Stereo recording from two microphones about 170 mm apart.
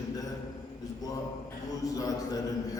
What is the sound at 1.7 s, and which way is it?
A man's voice, 20° left (ahead or behind).